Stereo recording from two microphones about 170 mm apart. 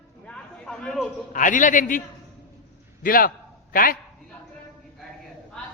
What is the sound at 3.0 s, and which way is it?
Speech, 55° left (ahead or behind).